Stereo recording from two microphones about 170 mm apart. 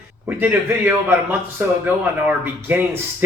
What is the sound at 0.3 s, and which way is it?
Speech, 15° right (ahead or behind).